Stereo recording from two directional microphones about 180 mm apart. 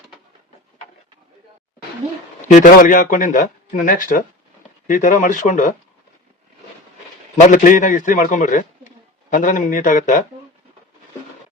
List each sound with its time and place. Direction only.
2.5 s a man's voice: 45° left (ahead or behind)
7.4 s a man's voice: 45° left (ahead or behind)